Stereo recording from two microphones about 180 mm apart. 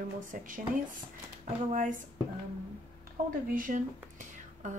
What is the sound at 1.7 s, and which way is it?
Speech, 45° right (ahead or behind).